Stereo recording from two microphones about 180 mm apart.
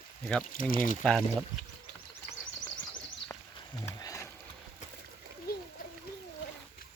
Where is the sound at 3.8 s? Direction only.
15° left (ahead or behind).